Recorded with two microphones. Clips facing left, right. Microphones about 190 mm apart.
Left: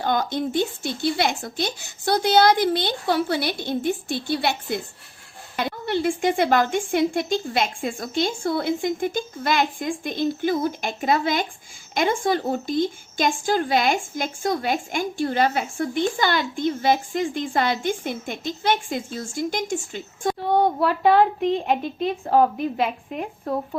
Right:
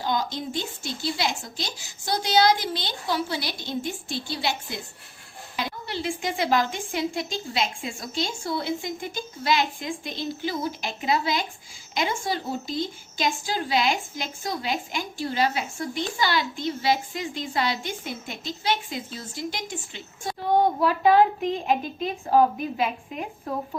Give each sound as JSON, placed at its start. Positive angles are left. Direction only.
{"t": 0.0, "sound": "a woman's voice", "side_deg": 55}
{"t": 21.7, "sound": "a woman's voice", "side_deg": 60}